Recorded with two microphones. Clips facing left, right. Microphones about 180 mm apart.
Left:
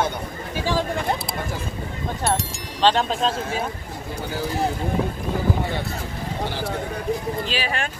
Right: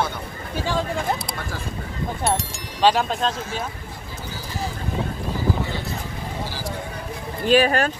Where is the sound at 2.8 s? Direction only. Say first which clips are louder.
Even; 5° right (ahead or behind).